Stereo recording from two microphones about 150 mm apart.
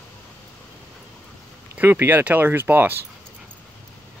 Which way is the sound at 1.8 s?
15° right (ahead or behind).